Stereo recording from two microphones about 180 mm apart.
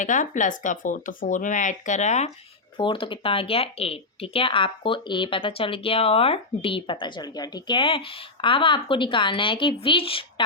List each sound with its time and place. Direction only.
0.0 s speech: 45° left (ahead or behind)
2.7 s speech: 25° left (ahead or behind)